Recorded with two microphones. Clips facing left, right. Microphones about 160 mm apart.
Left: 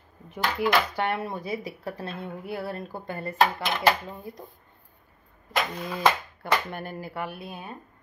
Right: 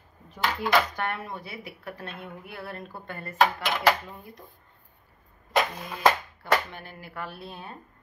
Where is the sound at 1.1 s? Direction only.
30° left (ahead or behind).